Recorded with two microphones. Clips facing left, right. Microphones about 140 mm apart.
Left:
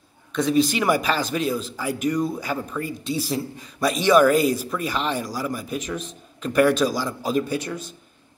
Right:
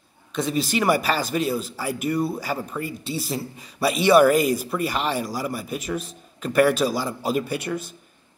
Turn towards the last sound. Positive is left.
turn(degrees=-5)  # may be behind; listen again after turning